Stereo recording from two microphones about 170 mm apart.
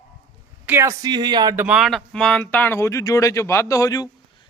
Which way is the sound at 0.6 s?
15° right (ahead or behind).